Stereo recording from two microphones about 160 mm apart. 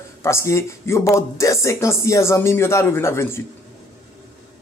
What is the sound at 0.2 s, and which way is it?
Speech, 15° left (ahead or behind).